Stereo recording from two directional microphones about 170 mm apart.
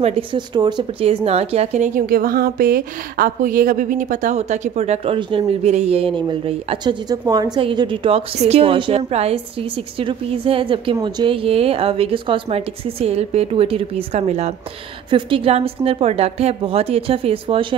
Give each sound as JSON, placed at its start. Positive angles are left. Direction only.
{"t": 0.0, "sound": "a woman's voice", "side_deg": -25}
{"t": 2.0, "sound": "a woman's voice", "side_deg": -60}
{"t": 15.0, "sound": "a woman's voice", "side_deg": -30}